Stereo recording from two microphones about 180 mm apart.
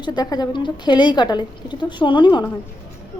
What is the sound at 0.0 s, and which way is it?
A woman's voice, 25° left (ahead or behind).